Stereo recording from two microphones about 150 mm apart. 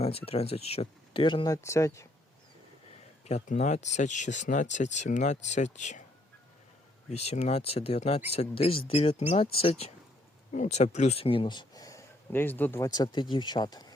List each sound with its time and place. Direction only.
0.0 s speech: 40° left (ahead or behind)
1.5 s speech: 20° left (ahead or behind)
3.2 s speech: 55° left (ahead or behind)
7.1 s speech: 45° left (ahead or behind); by 12.9 s 15° left (ahead or behind)
12.9 s speech: 30° left (ahead or behind)